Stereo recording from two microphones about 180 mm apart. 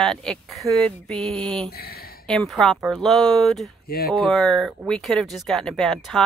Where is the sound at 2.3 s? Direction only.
5° left (ahead or behind).